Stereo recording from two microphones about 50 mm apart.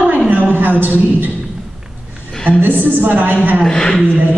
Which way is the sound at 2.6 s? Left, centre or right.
Right.